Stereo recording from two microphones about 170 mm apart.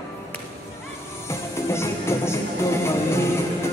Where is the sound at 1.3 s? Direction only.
15° left (ahead or behind).